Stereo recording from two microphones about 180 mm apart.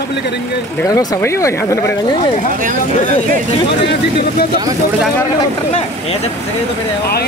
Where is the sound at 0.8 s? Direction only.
20° left (ahead or behind).